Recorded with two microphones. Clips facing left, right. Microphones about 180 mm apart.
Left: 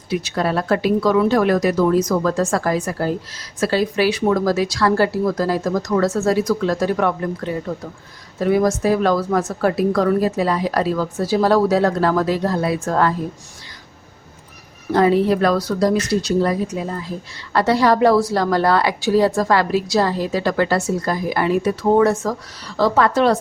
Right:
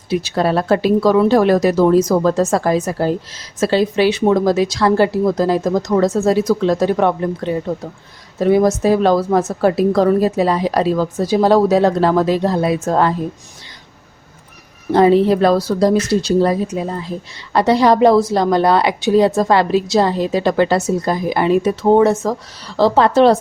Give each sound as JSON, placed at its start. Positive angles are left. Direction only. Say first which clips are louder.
{"t": 0.1, "sound": "a woman's voice", "louder": "right 4 dB", "side_deg": -30}
{"t": 14.9, "sound": "a woman's voice", "louder": "right 4 dB", "side_deg": -25}